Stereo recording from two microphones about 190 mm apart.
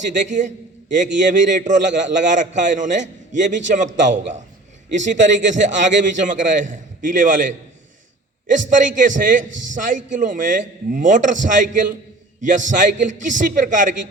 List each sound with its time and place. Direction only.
0.1 s a man's voice: 40° right (ahead or behind)
8.7 s a man's voice: 45° right (ahead or behind)